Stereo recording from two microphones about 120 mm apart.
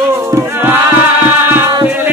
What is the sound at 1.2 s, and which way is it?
Music, 15° right (ahead or behind).